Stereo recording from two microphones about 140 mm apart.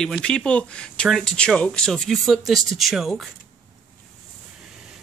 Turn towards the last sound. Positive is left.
turn(degrees=0)  # may be behind; listen again after turning